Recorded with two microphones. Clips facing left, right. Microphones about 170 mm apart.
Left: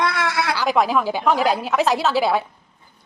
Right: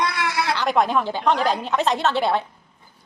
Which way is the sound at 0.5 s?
Centre (ahead or behind).